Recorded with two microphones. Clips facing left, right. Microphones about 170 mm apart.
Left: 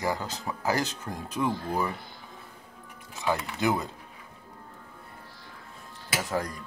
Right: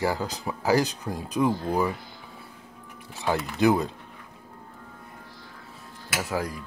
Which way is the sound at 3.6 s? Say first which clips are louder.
Right 7 dB; 20° right (ahead or behind).